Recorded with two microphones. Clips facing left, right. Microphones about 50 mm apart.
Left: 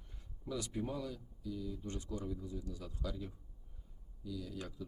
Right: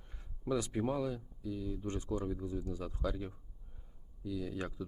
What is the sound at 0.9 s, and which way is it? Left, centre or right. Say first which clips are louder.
Speech: right 6 dB; right.